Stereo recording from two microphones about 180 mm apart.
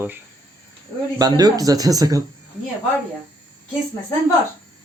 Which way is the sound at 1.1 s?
20° right (ahead or behind).